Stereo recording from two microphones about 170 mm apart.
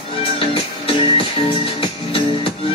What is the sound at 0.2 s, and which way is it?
Music, 35° left (ahead or behind).